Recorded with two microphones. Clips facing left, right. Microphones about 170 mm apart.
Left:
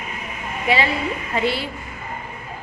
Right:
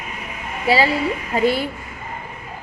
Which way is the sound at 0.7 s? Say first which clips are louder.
Right 3 dB; 35° right (ahead or behind).